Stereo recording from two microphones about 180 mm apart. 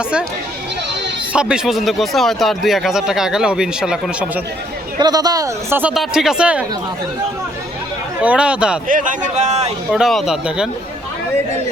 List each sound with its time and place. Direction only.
1.3 s speech: 5° right (ahead or behind)
4.9 s speech: 20° right (ahead or behind)
5.8 s speech: centre (ahead or behind)
8.2 s speech: 5° right (ahead or behind)
8.9 s a man's voice: 45° right (ahead or behind)
9.9 s speech: centre (ahead or behind)